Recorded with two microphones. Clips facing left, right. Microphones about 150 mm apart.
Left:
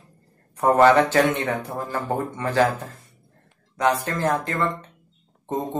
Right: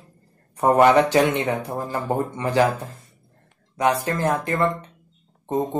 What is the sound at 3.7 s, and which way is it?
Speech, 10° right (ahead or behind).